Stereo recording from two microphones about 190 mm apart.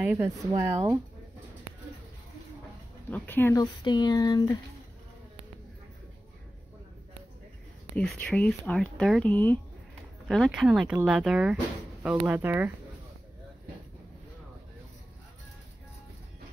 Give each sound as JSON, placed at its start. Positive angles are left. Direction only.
{"t": 0.0, "sound": "speech", "side_deg": -10}
{"t": 3.1, "sound": "speech", "side_deg": 10}
{"t": 7.9, "sound": "speech", "side_deg": 5}
{"t": 10.2, "sound": "speech", "side_deg": 0}